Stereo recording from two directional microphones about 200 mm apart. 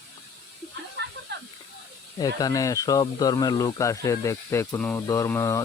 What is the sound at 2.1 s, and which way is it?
Speech, 20° left (ahead or behind).